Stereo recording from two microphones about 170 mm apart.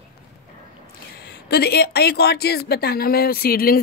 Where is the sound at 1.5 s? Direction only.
70° left (ahead or behind).